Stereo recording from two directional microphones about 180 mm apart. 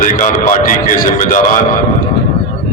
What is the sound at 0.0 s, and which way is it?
A man's voice, 45° left (ahead or behind).